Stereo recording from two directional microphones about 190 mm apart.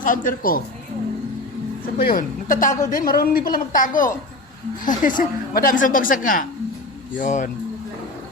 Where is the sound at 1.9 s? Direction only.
50° left (ahead or behind).